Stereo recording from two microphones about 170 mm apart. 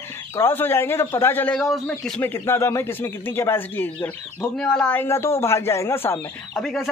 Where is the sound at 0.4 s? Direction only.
15° left (ahead or behind).